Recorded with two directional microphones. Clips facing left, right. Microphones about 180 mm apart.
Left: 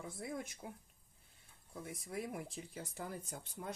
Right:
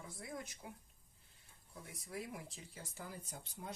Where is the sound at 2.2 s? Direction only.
55° left (ahead or behind).